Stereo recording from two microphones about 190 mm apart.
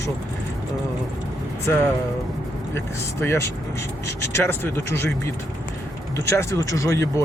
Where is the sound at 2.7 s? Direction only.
15° left (ahead or behind).